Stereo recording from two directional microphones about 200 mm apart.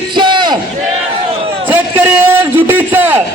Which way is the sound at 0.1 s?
25° right (ahead or behind).